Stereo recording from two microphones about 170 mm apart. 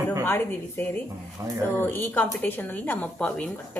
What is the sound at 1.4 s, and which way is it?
Speech, 20° right (ahead or behind).